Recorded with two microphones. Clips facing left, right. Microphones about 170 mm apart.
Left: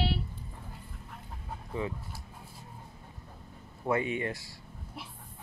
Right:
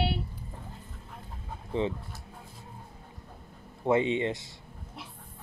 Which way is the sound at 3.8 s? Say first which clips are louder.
Right 5 dB; 20° right (ahead or behind).